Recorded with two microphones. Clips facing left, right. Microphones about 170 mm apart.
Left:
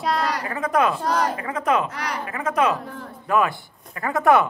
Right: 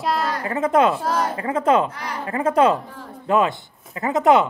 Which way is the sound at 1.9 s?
85° left.